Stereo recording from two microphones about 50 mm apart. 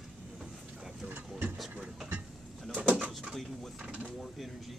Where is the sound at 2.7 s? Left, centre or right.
Right.